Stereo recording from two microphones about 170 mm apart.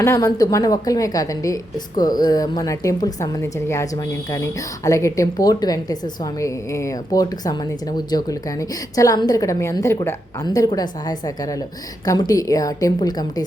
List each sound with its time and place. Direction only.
0.0 s a woman's voice: 20° left (ahead or behind)